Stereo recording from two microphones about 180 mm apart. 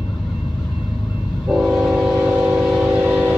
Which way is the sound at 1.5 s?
Centre (ahead or behind).